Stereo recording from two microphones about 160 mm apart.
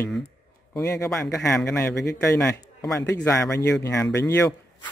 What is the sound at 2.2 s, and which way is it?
A man's voice, 15° left (ahead or behind).